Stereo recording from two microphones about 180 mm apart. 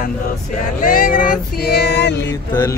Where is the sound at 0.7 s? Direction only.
50° left (ahead or behind); by 2.1 s 65° left (ahead or behind).